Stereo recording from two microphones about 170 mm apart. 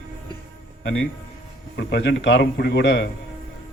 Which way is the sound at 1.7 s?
90° left.